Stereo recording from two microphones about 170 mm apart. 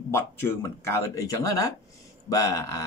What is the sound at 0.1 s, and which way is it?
Speech, 15° left (ahead or behind).